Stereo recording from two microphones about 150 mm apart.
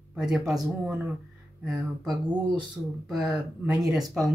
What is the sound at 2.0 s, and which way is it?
Speech, 25° right (ahead or behind).